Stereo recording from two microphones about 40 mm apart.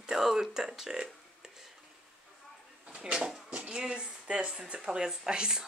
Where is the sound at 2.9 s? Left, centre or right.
Right.